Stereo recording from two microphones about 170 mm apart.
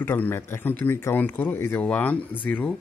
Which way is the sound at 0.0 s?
10° left (ahead or behind).